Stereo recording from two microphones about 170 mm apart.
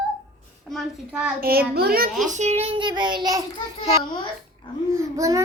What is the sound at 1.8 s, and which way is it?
Speech, 60° right (ahead or behind).